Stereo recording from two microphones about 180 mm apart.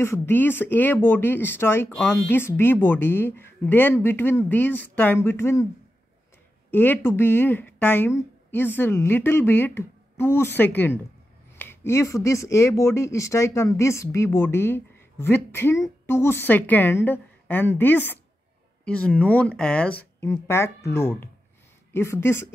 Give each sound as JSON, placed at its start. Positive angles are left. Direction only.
{"t": 0.0, "sound": "speech", "side_deg": 15}
{"t": 6.7, "sound": "speech", "side_deg": 10}